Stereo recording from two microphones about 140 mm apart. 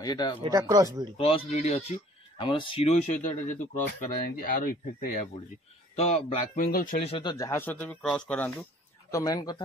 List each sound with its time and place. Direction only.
0.0 s speech: 30° left (ahead or behind)
0.5 s speech: 25° right (ahead or behind)
1.1 s speech: 40° left (ahead or behind)
2.3 s speech: 35° left (ahead or behind); by 3.8 s 65° left (ahead or behind)
4.4 s speech: 90° left
5.9 s speech: 50° left (ahead or behind)
6.6 s speech: 75° left (ahead or behind)
7.1 s speech: 40° left (ahead or behind)
7.3 s speech: 20° left (ahead or behind)
9.1 s speech: 25° left (ahead or behind)